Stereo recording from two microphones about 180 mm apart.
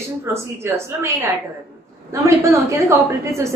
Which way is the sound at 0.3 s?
15° right (ahead or behind).